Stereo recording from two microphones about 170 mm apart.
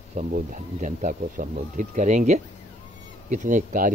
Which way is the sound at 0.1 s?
50° right (ahead or behind).